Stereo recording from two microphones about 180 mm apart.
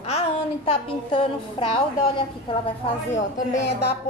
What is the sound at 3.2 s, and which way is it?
Speech, 40° left (ahead or behind).